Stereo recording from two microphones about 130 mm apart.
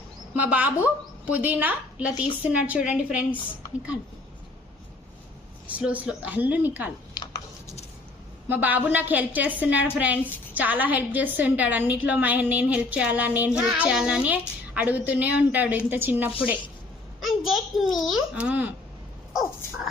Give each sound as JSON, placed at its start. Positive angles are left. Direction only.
{"t": 0.3, "sound": "a woman's voice", "side_deg": -10}
{"t": 5.6, "sound": "a woman's voice", "side_deg": -10}
{"t": 7.1, "sound": "a sound", "side_deg": 35}
{"t": 8.4, "sound": "a woman's voice", "side_deg": -15}
{"t": 17.2, "sound": "a sound", "side_deg": 0}
{"t": 18.0, "sound": "a woman's voice", "side_deg": -5}
{"t": 19.3, "sound": "crow", "side_deg": 0}